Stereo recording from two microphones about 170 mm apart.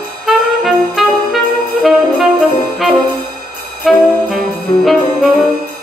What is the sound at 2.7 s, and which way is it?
Music, centre (ahead or behind).